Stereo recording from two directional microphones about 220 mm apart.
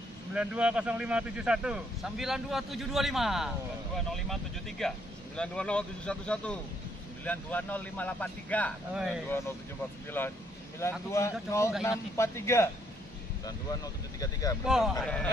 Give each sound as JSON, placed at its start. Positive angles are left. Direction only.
{"t": 0.3, "sound": "speech", "side_deg": -5}
{"t": 14.2, "sound": "speech", "side_deg": 15}
{"t": 14.7, "sound": "speech", "side_deg": 0}